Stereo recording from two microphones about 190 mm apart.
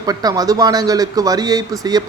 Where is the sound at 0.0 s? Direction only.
20° right (ahead or behind).